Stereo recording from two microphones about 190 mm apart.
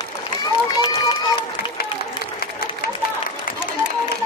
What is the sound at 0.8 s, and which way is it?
Run, 25° left (ahead or behind).